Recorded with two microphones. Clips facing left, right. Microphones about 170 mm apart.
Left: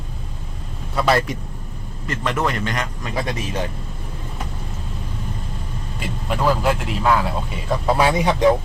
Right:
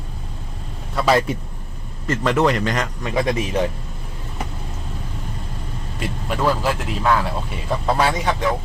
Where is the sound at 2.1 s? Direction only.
35° right (ahead or behind).